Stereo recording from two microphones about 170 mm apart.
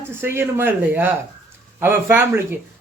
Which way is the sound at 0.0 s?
15° right (ahead or behind).